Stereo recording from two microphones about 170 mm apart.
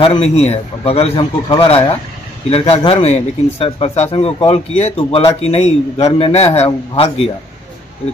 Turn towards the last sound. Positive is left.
turn(degrees=40)  # may be behind; listen again after turning